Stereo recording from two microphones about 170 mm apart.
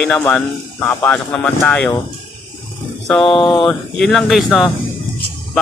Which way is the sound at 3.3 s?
30° left (ahead or behind).